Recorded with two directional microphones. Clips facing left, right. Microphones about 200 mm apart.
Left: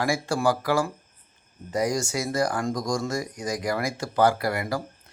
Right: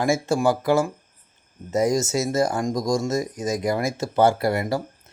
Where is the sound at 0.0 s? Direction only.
20° right (ahead or behind).